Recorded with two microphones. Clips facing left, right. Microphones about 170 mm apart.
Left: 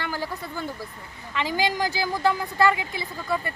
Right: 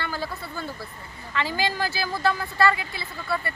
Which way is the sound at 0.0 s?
15° left (ahead or behind).